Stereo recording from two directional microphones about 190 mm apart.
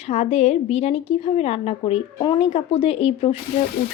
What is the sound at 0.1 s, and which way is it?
A woman's voice, 35° left (ahead or behind).